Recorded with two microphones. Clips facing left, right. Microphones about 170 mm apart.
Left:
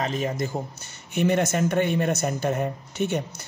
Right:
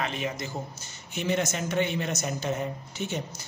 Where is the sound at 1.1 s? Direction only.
60° left (ahead or behind).